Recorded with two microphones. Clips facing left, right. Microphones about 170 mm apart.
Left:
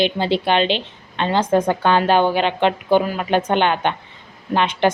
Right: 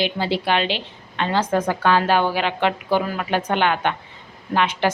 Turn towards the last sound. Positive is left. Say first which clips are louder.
# left 3 dB
turn(degrees=25)  # may be behind; listen again after turning